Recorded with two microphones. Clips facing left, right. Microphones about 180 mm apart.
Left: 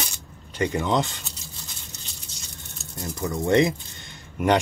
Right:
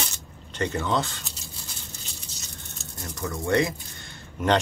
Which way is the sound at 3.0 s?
20° left (ahead or behind).